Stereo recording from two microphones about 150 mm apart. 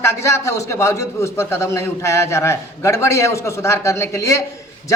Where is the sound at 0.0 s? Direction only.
20° left (ahead or behind).